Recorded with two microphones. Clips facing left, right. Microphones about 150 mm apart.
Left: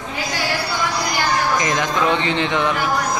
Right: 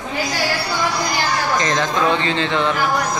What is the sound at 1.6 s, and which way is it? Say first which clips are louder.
Speech: right 1 dB; 15° left (ahead or behind).